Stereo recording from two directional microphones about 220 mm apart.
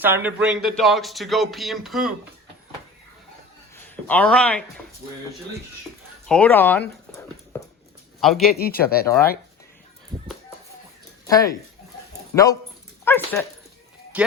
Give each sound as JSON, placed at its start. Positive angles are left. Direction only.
{"t": 0.0, "sound": "speech", "side_deg": -10}
{"t": 4.0, "sound": "speech", "side_deg": 5}
{"t": 6.2, "sound": "speech", "side_deg": 5}
{"t": 8.2, "sound": "speech", "side_deg": 0}
{"t": 8.5, "sound": "speech", "side_deg": 45}
{"t": 11.3, "sound": "dog", "side_deg": 15}
{"t": 12.3, "sound": "speech", "side_deg": 15}
{"t": 13.1, "sound": "dog", "side_deg": 10}
{"t": 14.1, "sound": "speech", "side_deg": -5}